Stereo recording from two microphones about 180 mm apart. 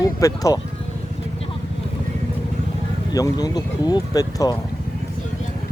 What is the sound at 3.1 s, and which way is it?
Speech, 20° left (ahead or behind).